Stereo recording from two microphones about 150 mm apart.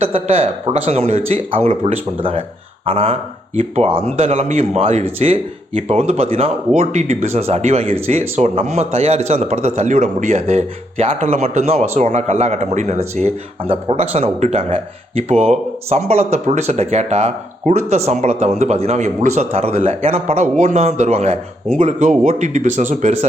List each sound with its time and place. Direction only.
0.0 s speech: 40° right (ahead or behind)